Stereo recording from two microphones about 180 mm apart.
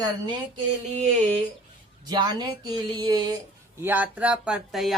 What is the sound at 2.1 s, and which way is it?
Speech, 25° right (ahead or behind).